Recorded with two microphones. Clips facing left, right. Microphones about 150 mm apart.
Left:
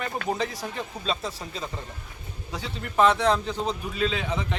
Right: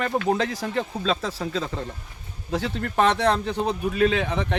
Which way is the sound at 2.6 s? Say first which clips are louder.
Left 1 dB; 65° right (ahead or behind).